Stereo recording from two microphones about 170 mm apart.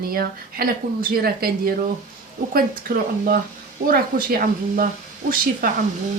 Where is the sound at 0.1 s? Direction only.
60° right (ahead or behind).